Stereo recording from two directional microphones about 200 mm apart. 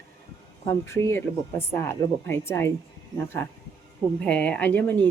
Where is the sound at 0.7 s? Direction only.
15° left (ahead or behind).